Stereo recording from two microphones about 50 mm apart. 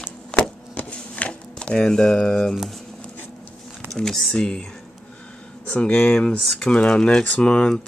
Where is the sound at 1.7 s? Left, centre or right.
Centre.